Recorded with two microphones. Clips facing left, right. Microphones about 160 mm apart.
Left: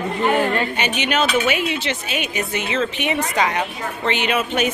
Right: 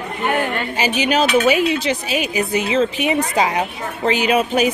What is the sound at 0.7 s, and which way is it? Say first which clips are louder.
A woman's voice: right 3 dB; 30° right (ahead or behind).